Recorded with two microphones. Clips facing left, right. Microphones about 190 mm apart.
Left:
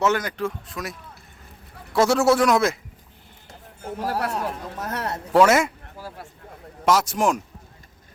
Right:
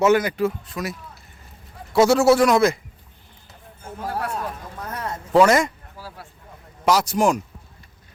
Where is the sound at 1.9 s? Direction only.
Centre (ahead or behind).